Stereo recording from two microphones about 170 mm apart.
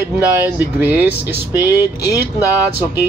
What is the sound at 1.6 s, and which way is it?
Speech, 20° left (ahead or behind).